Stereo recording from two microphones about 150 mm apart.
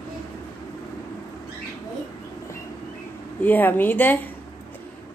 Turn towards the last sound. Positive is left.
turn(degrees=10)  # may be behind; listen again after turning